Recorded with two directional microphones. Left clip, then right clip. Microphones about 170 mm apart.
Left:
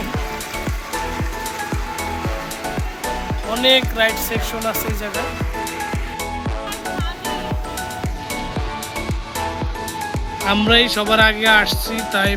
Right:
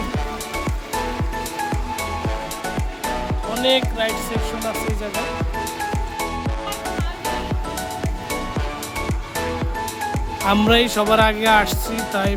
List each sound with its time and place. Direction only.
3.5 s speech: 15° left (ahead or behind)
10.4 s speech: 10° right (ahead or behind)